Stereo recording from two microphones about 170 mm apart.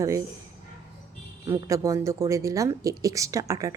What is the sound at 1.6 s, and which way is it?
A woman's voice, 20° right (ahead or behind).